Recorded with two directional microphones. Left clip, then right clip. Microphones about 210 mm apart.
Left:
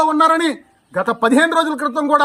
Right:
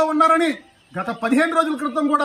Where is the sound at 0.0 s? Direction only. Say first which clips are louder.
Left 2 dB; 25° left (ahead or behind).